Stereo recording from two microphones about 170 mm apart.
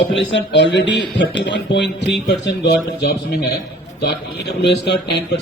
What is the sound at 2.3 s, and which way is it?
A man's voice, 75° left (ahead or behind).